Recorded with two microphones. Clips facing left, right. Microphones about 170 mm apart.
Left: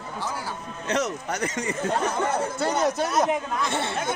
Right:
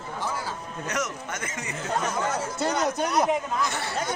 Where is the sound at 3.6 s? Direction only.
25° left (ahead or behind).